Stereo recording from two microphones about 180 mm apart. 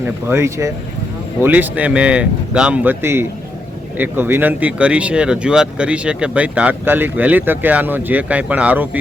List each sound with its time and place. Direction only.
0.3 s speech: 15° right (ahead or behind)